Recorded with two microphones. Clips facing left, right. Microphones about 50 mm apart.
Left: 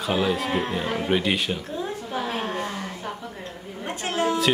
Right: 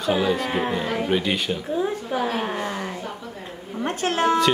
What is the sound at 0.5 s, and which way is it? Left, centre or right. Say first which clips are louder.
Speech: right 2 dB; centre.